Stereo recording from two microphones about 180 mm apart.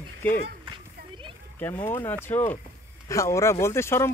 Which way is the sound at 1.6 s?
10° left (ahead or behind).